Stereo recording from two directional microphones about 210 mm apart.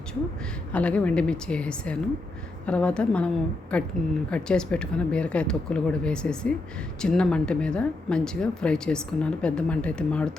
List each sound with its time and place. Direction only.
0.7 s speech: 5° left (ahead or behind)